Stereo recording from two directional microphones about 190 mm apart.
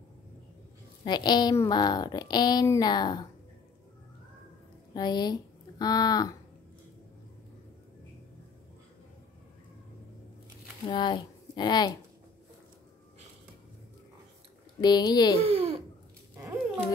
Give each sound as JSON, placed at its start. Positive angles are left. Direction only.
{"t": 1.0, "sound": "a woman's voice", "side_deg": 20}
{"t": 4.9, "sound": "speech", "side_deg": 20}
{"t": 10.9, "sound": "speech", "side_deg": 25}
{"t": 14.8, "sound": "a woman's voice", "side_deg": 20}
{"t": 15.4, "sound": "a child's voice", "side_deg": -30}